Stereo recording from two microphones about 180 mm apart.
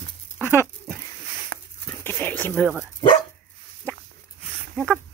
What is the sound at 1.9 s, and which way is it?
Speech, 10° left (ahead or behind).